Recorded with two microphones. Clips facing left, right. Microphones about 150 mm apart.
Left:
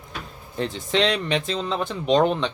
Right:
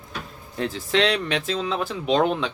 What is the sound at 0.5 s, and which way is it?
Speech, centre (ahead or behind).